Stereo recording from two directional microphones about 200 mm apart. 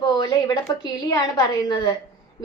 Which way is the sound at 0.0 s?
20° left (ahead or behind).